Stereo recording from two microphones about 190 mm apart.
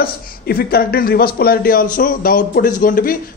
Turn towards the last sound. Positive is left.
turn(degrees=45)  # may be behind; listen again after turning